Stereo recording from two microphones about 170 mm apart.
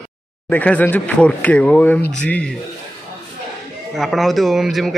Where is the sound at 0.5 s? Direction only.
10° left (ahead or behind).